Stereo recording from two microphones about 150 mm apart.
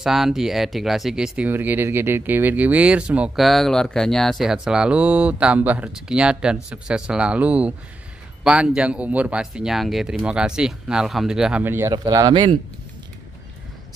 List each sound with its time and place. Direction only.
0.0 s speech: centre (ahead or behind)
11.9 s speech: 25° right (ahead or behind)